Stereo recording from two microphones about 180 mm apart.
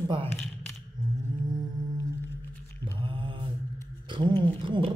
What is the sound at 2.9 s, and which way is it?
Mantra, 30° right (ahead or behind).